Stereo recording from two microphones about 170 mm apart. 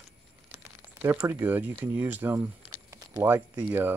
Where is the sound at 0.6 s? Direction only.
15° right (ahead or behind).